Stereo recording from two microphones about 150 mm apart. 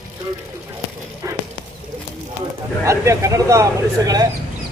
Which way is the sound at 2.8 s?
20° right (ahead or behind).